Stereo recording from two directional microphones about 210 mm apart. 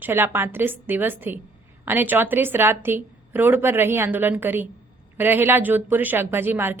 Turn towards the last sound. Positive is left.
turn(degrees=-10)  # may be behind; listen again after turning